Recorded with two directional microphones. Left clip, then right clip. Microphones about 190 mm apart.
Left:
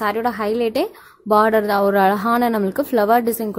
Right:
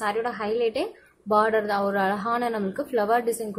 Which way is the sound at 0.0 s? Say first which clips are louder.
Left 6 dB; 50° left (ahead or behind).